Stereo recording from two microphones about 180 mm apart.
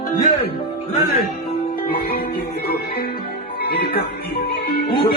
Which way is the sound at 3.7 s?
60° left (ahead or behind).